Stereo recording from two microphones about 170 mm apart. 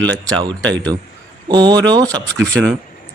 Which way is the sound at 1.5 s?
25° right (ahead or behind).